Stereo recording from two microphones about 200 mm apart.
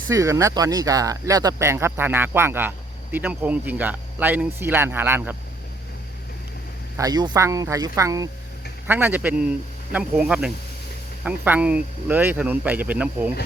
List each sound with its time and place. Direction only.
0.1 s speech: 15° right (ahead or behind)
6.9 s speech: 20° right (ahead or behind)